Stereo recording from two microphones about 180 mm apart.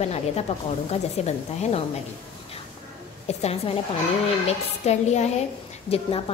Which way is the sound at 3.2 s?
35° left (ahead or behind).